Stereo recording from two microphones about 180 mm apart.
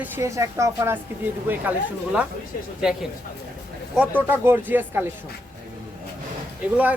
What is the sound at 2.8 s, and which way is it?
Speech, 5° right (ahead or behind).